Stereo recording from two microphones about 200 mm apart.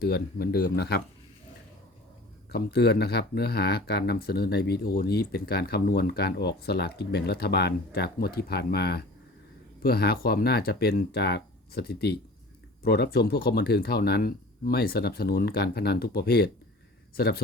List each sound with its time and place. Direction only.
0.0 s speech: 50° left (ahead or behind)
2.5 s speech: 55° left (ahead or behind)